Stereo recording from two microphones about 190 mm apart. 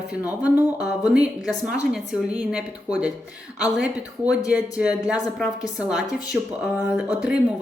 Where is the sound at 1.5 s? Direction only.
Centre (ahead or behind).